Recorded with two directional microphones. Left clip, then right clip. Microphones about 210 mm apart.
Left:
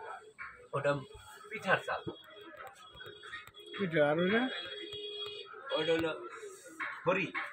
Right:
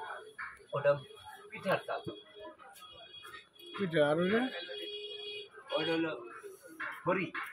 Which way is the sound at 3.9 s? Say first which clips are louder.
Even; centre (ahead or behind).